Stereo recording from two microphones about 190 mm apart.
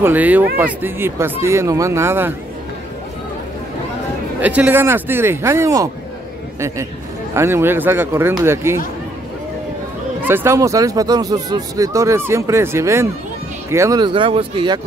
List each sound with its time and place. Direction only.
0.0 s speech: 10° right (ahead or behind)
4.4 s speech: 10° right (ahead or behind)
7.3 s speech: 15° right (ahead or behind)
10.2 s speech: 10° right (ahead or behind)